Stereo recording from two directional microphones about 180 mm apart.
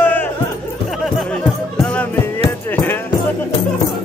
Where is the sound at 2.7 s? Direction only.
10° left (ahead or behind).